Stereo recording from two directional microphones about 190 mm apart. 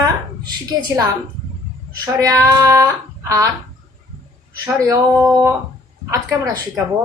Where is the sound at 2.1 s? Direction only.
15° right (ahead or behind).